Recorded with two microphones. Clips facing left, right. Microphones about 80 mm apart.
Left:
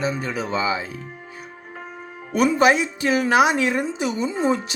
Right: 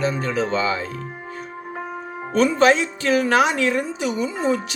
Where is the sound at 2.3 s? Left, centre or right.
Centre.